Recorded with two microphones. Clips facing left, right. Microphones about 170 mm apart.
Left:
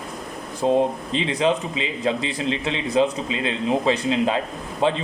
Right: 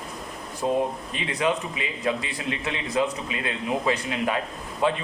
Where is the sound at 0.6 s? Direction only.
25° left (ahead or behind).